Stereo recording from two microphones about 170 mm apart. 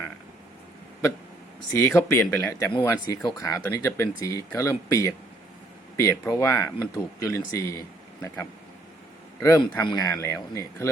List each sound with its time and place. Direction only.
1.8 s speech: 15° left (ahead or behind)
9.4 s speech: 20° left (ahead or behind)